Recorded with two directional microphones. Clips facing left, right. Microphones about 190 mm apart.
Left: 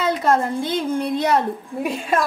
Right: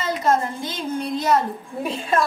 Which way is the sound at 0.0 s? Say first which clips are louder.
Left 2 dB; 60° left (ahead or behind).